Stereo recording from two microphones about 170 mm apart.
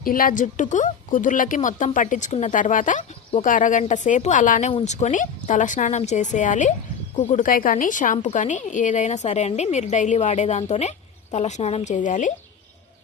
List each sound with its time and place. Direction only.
0.0 s a woman's voice: 55° left (ahead or behind)